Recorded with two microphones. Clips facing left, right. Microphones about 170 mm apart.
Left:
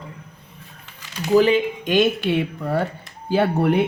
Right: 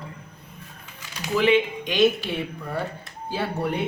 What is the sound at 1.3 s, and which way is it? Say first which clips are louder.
Speech: left 4 dB; 40° left (ahead or behind).